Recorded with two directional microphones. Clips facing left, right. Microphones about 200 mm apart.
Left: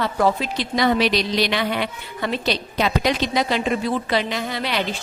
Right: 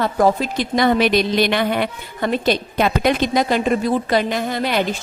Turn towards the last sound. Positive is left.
turn(degrees=-50)  # may be behind; listen again after turning